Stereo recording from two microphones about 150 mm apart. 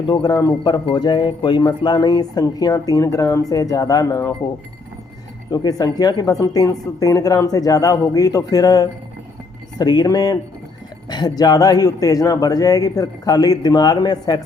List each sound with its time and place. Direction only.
0.1 s speech: 25° left (ahead or behind)
5.5 s speech: 25° left (ahead or behind)